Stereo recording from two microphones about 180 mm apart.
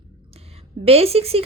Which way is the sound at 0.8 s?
35° right (ahead or behind).